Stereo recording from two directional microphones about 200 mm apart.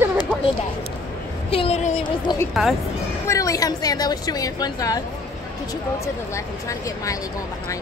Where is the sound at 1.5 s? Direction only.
30° left (ahead or behind).